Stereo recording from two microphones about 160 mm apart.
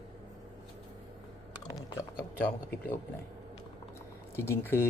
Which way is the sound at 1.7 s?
20° left (ahead or behind).